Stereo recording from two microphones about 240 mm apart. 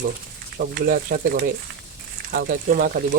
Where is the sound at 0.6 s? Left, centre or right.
Right.